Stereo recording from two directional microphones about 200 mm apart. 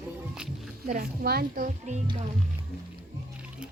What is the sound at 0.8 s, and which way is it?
Speech, 45° right (ahead or behind).